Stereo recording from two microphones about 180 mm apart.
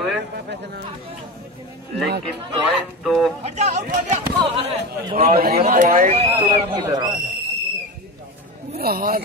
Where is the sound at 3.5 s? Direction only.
40° right (ahead or behind).